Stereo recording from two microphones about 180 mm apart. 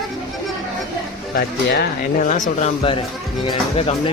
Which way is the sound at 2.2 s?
45° left (ahead or behind).